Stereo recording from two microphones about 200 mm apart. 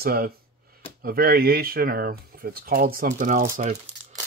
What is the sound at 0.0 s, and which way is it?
Speech, 50° right (ahead or behind).